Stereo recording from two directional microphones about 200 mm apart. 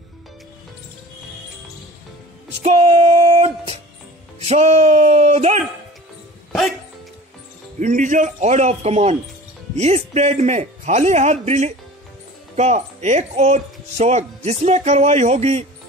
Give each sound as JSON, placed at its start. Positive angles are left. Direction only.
{"t": 2.6, "sound": "music", "side_deg": -30}
{"t": 7.8, "sound": "speech", "side_deg": -40}